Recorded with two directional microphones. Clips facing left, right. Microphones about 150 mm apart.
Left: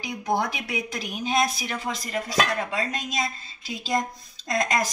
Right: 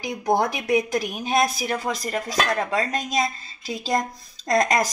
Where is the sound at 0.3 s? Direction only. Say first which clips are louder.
Right 6 dB; 45° right (ahead or behind).